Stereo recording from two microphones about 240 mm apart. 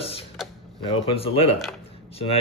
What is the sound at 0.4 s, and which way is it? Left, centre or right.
Creak, centre.